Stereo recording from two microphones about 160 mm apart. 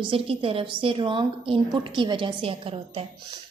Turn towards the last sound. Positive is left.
turn(degrees=-35)  # may be behind; listen again after turning